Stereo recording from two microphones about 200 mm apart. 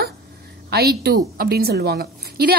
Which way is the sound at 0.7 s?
55° right (ahead or behind).